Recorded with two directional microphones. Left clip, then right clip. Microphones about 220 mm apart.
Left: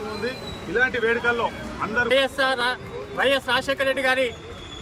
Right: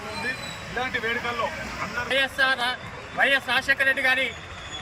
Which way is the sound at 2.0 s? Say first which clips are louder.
Even; 25° left (ahead or behind).